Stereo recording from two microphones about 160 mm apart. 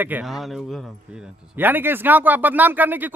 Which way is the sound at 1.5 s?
10° right (ahead or behind).